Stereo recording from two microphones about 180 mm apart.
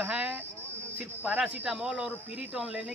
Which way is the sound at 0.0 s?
10° right (ahead or behind).